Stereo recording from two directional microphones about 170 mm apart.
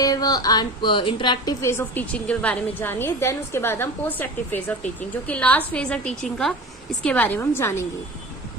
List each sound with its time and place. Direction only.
0.0 s a woman's voice: 20° left (ahead or behind)
1.8 s a woman's voice: 10° left (ahead or behind)